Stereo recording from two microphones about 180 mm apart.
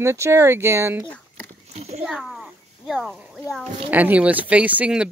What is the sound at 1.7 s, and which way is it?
Speech, 35° right (ahead or behind).